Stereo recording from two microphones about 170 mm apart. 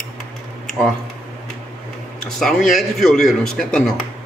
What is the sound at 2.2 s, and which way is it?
Speech, 5° left (ahead or behind).